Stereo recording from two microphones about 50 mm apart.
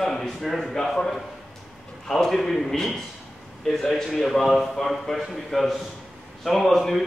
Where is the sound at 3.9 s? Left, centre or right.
Centre.